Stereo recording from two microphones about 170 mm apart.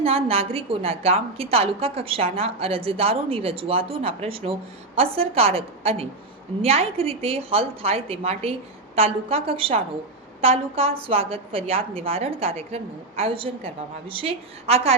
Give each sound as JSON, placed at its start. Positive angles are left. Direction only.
{"t": 0.0, "sound": "a woman's voice", "side_deg": -35}